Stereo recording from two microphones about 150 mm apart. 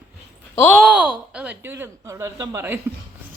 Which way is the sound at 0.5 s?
15° left (ahead or behind).